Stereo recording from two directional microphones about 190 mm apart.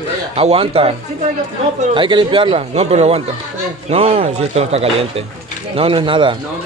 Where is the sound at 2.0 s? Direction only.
25° right (ahead or behind).